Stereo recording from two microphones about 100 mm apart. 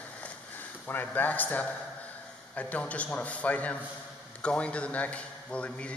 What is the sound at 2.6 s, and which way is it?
Speech, 15° left (ahead or behind).